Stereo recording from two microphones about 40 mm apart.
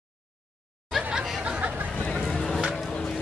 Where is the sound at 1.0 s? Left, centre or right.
Right.